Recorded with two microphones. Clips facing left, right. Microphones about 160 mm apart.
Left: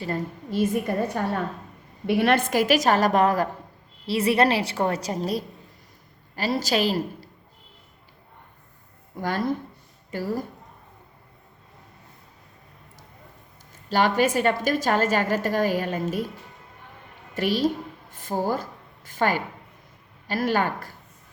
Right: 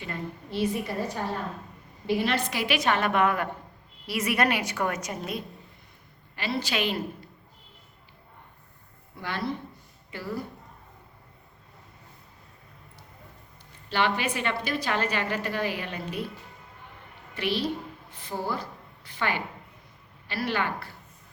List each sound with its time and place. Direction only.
0.0 s a woman's voice: 40° left (ahead or behind)
9.1 s a woman's voice: 45° left (ahead or behind)
13.9 s a woman's voice: 40° left (ahead or behind)
17.3 s a woman's voice: 45° left (ahead or behind)